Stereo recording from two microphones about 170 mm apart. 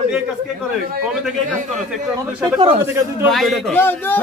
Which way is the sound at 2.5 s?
30° right (ahead or behind).